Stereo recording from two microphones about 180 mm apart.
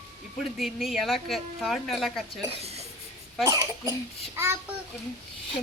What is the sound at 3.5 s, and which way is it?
A child's voice, 20° right (ahead or behind).